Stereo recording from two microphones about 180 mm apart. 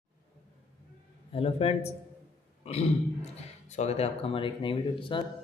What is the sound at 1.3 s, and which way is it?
Speech, 30° left (ahead or behind).